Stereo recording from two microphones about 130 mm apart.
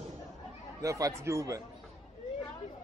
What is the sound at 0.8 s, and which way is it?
Speech, 25° right (ahead or behind).